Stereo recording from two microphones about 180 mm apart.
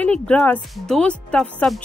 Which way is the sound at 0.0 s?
5° left (ahead or behind).